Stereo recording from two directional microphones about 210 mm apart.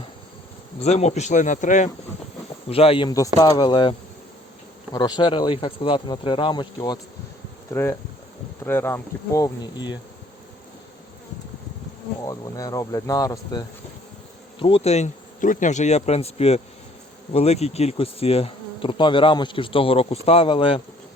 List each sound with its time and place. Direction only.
0.8 s speech: 30° left (ahead or behind)
2.6 s bee: 30° left (ahead or behind)
4.9 s bee: 20° left (ahead or behind)
7.7 s speech: 10° left (ahead or behind)
12.2 s speech: 15° left (ahead or behind)
17.3 s bee: 30° left (ahead or behind)